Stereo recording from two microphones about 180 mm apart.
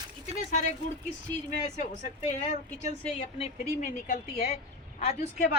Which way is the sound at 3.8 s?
50° left (ahead or behind).